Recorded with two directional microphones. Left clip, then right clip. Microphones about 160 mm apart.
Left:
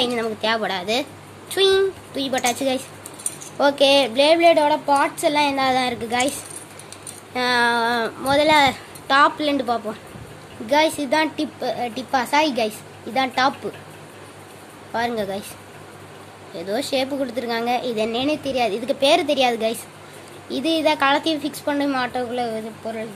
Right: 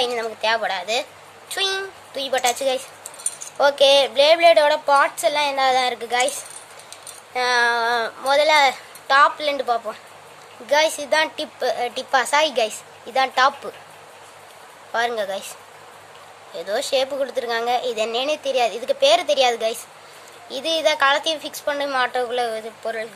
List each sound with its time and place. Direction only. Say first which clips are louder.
0.0 s speech: even; centre (ahead or behind)
4.4 s a woman's voice: right 1 dB; 20° right (ahead or behind)
5.2 s a woman's voice: even; centre (ahead or behind)
11.6 s a woman's voice: right 5 dB; 20° right (ahead or behind)
14.9 s a woman's voice: right 1 dB; 15° right (ahead or behind)
16.5 s a woman's voice: right 2 dB; 10° right (ahead or behind)